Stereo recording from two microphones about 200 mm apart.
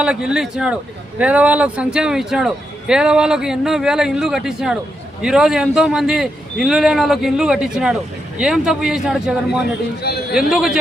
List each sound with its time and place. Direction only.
0.0 s speech: 5° right (ahead or behind)
10.0 s a man's voice: 55° left (ahead or behind)
10.3 s speech: 5° right (ahead or behind)